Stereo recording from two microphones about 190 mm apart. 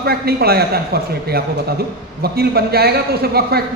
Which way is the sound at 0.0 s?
55° right (ahead or behind).